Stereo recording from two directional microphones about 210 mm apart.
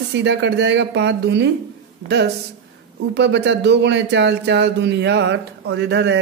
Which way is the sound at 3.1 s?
55° right (ahead or behind).